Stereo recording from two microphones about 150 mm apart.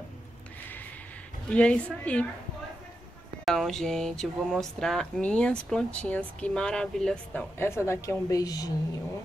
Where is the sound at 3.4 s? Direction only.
Centre (ahead or behind); by 8.7 s 25° left (ahead or behind).